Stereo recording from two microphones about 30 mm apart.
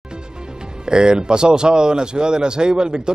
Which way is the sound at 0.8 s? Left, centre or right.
Right.